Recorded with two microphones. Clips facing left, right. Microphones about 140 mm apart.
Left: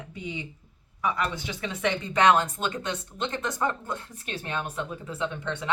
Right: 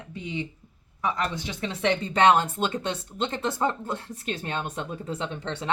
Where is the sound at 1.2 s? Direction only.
35° right (ahead or behind).